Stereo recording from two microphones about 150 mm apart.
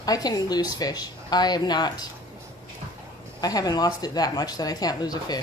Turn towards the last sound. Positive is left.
turn(degrees=25)  # may be behind; listen again after turning